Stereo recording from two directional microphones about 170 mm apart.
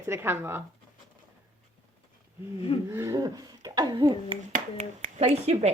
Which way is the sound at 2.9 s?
15° right (ahead or behind).